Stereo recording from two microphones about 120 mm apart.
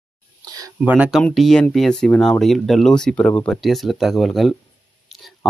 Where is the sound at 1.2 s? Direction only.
Centre (ahead or behind).